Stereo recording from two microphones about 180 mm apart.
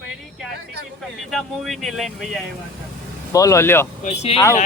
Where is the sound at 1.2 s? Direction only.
Centre (ahead or behind).